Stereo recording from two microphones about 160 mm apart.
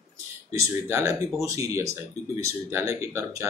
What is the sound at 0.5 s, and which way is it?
Speech, 20° right (ahead or behind).